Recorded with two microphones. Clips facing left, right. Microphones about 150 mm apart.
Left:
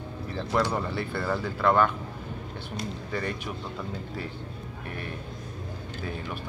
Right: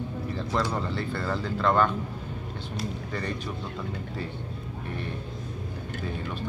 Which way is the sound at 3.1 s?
10° left (ahead or behind).